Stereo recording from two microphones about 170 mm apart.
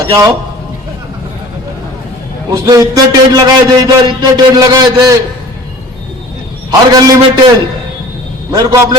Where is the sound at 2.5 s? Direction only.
20° right (ahead or behind).